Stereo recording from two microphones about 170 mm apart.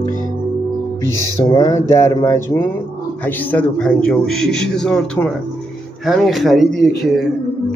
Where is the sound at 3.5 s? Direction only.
5° left (ahead or behind).